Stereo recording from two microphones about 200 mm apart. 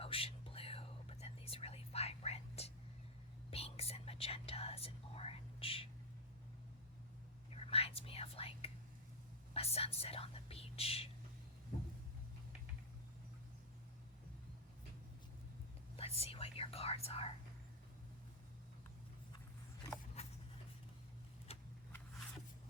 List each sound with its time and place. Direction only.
0.0 s whispering: 30° left (ahead or behind)
7.5 s whispering: 30° left (ahead or behind)
16.0 s whispering: 30° left (ahead or behind)
20.2 s a sound: 30° left (ahead or behind)